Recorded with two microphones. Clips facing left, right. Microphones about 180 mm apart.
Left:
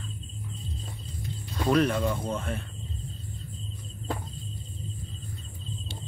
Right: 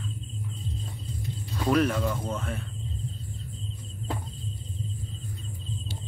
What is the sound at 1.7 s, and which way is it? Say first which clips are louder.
Speech: even; 5° right (ahead or behind).